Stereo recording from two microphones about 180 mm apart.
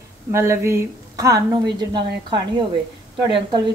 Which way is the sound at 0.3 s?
15° right (ahead or behind).